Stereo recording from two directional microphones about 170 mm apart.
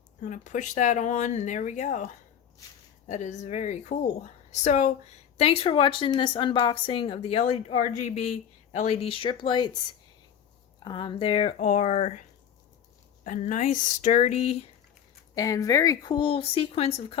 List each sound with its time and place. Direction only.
0.2 s speech: 45° left (ahead or behind)
3.1 s a woman's voice: 45° left (ahead or behind); by 9.7 s 25° left (ahead or behind)
10.8 s a woman's voice: 30° left (ahead or behind)
13.2 s speech: 45° left (ahead or behind)
15.4 s a woman's voice: 20° left (ahead or behind)